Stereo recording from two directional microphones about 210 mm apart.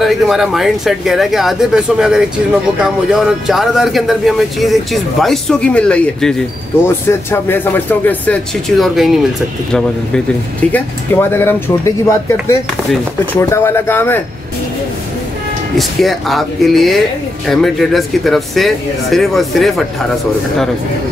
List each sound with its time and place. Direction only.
0.0 s speech: centre (ahead or behind)
15.8 s speech: centre (ahead or behind)